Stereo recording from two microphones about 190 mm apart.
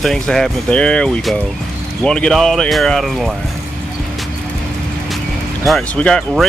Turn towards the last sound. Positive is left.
turn(degrees=5)  # may be behind; listen again after turning